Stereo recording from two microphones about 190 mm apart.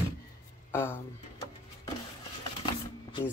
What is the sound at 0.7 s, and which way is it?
Speech, 15° left (ahead or behind).